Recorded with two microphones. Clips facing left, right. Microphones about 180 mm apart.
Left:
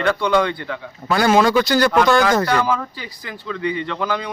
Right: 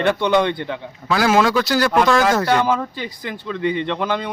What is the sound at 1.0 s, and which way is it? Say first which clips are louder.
A man's voice: left 1 dB; centre (ahead or behind).